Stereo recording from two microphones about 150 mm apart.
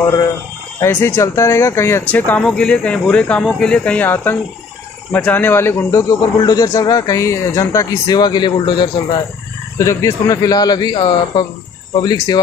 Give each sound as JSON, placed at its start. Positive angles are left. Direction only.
{"t": 0.7, "sound": "speech", "side_deg": 15}
{"t": 9.8, "sound": "speech", "side_deg": 20}